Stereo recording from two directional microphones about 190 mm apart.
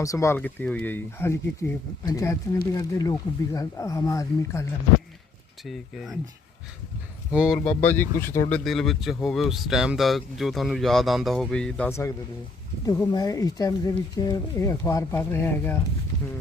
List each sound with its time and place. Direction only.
0.0 s speech: 15° left (ahead or behind)
5.6 s speech: centre (ahead or behind)
7.3 s speech: centre (ahead or behind)